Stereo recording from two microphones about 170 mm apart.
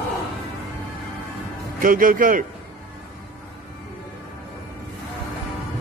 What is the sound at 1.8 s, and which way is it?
Speech, 55° right (ahead or behind).